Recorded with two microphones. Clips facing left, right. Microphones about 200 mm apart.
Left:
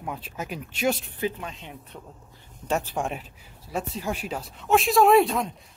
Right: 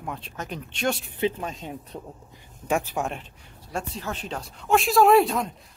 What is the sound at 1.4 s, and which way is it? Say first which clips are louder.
Speech: right 5 dB; 40° right (ahead or behind).